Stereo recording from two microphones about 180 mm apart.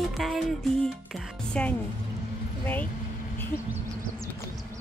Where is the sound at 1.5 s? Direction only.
5° left (ahead or behind).